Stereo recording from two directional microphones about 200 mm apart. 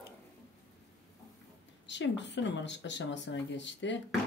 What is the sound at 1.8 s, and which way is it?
Speech, 65° left (ahead or behind).